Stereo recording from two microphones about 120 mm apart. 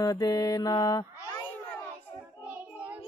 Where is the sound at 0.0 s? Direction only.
30° left (ahead or behind).